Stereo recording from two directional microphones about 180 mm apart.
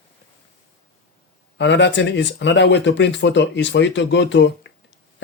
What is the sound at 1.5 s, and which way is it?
Speech, 75° left (ahead or behind).